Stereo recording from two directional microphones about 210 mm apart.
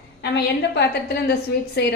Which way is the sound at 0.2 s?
50° left (ahead or behind).